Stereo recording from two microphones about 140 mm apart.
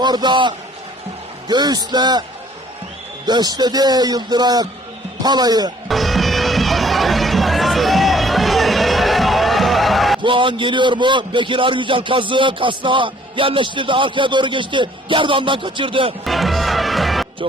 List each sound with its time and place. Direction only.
0.0 s a man's voice: 30° right (ahead or behind)
3.2 s speech: 30° right (ahead or behind)
5.9 s music: centre (ahead or behind)
10.2 s a man's voice: 35° right (ahead or behind)
16.2 s music: centre (ahead or behind)